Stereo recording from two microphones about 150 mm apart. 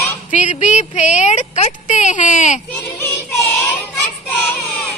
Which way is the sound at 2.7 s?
15° left (ahead or behind).